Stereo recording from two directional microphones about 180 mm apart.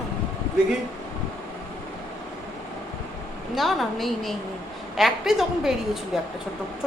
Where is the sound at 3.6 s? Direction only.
Centre (ahead or behind).